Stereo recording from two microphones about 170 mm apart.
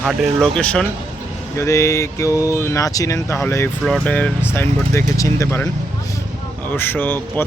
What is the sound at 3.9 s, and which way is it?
Speech, 5° left (ahead or behind).